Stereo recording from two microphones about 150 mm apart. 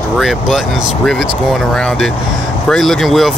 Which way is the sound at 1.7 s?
5° left (ahead or behind).